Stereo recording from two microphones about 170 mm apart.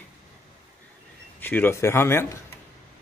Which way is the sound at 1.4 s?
10° left (ahead or behind).